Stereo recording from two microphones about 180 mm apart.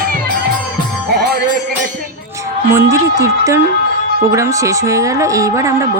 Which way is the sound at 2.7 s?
15° right (ahead or behind).